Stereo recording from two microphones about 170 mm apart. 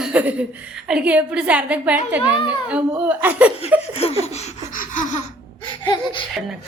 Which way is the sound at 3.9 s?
35° left (ahead or behind).